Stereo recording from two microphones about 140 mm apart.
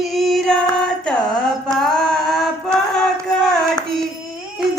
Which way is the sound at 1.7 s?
5° left (ahead or behind).